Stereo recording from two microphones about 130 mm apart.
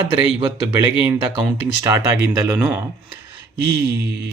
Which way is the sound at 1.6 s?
20° right (ahead or behind).